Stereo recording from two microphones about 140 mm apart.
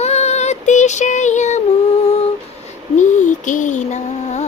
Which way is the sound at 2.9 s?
65° left (ahead or behind).